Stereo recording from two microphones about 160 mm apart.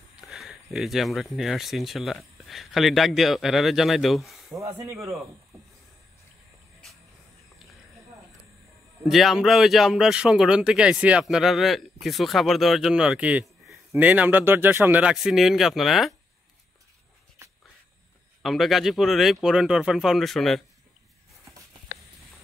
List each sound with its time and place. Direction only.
0.3 s speech: centre (ahead or behind)
4.7 s speech: 20° right (ahead or behind)
9.0 s speech: centre (ahead or behind)
18.4 s speech: centre (ahead or behind)